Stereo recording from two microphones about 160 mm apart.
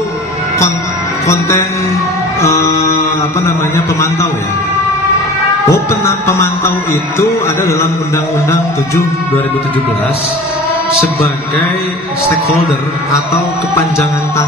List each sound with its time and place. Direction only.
1.2 s a man's voice: 15° left (ahead or behind)
2.4 s music: 20° left (ahead or behind)
3.4 s a man's voice: 20° left (ahead or behind)
5.7 s a man's voice: 15° left (ahead or behind)